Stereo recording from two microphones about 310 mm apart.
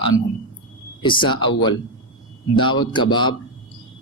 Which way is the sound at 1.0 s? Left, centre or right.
Centre.